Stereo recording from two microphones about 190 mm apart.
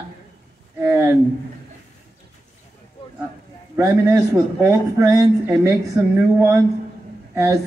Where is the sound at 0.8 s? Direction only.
15° right (ahead or behind).